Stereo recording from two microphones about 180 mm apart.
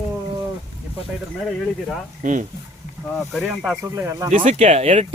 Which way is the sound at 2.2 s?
45° right (ahead or behind).